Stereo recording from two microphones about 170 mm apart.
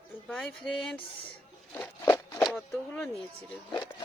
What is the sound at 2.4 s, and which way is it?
Speech, 5° left (ahead or behind).